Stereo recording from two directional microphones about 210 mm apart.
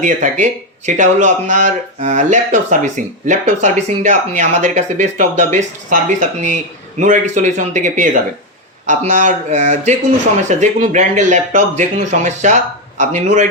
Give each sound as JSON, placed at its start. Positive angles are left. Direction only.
{"t": 0.0, "sound": "speech", "side_deg": -35}